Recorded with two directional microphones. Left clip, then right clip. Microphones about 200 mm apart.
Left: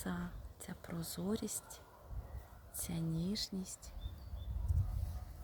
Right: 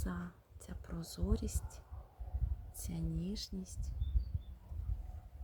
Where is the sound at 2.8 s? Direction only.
20° left (ahead or behind).